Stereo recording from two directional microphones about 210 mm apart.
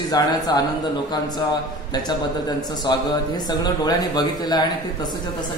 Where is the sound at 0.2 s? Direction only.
20° left (ahead or behind).